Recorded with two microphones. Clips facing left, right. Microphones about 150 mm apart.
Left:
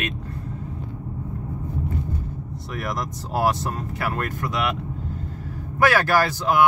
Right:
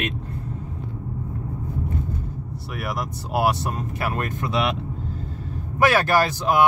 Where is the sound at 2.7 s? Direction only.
10° right (ahead or behind).